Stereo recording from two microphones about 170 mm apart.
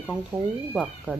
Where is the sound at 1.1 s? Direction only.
10° right (ahead or behind).